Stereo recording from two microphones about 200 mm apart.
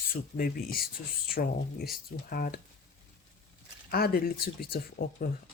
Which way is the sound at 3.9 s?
50° left (ahead or behind).